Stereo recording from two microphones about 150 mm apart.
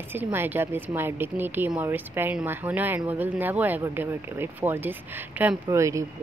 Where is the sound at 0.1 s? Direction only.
15° right (ahead or behind).